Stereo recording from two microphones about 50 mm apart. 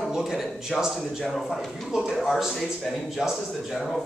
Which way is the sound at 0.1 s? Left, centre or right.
Centre.